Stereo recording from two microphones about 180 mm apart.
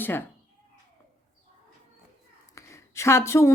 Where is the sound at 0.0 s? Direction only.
10° left (ahead or behind).